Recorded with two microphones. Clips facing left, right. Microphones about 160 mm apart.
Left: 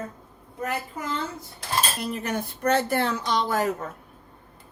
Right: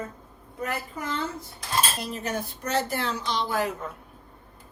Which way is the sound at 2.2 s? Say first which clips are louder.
Left 6 dB; 55° left (ahead or behind).